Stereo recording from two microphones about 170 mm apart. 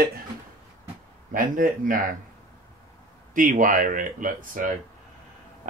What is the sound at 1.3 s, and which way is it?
Speech, 55° right (ahead or behind).